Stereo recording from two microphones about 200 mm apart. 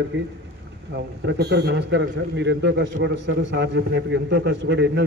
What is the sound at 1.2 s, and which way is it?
A man's voice, 55° right (ahead or behind).